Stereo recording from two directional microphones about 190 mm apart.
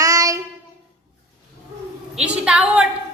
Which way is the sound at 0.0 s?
15° right (ahead or behind).